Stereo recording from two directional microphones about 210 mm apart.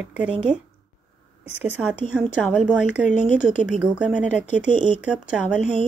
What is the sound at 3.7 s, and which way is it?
Speech, 5° right (ahead or behind).